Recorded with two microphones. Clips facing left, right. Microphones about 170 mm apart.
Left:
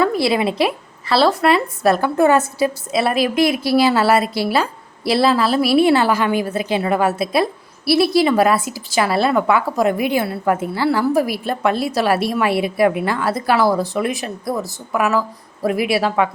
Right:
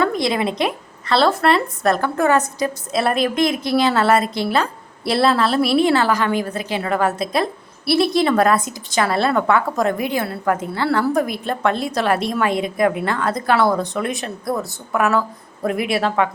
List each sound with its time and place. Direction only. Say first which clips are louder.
0.0 s a woman's voice: left 2 dB; 5° left (ahead or behind)
6.4 s a woman's voice: left 4 dB; 20° left (ahead or behind)
10.9 s a woman's voice: right 1 dB; 5° left (ahead or behind)